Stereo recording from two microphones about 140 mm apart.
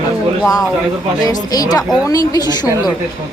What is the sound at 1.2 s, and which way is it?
A woman's voice, 25° left (ahead or behind).